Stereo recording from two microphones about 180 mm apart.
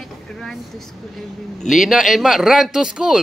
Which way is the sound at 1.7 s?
Centre (ahead or behind).